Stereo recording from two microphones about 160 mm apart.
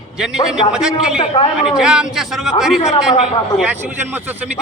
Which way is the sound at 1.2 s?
30° left (ahead or behind).